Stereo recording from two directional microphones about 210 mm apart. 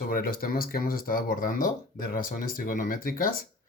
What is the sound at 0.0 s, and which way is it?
Speech, 45° left (ahead or behind).